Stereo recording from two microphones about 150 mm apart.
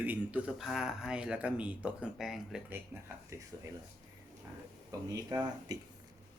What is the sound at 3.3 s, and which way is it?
Speech, 20° right (ahead or behind).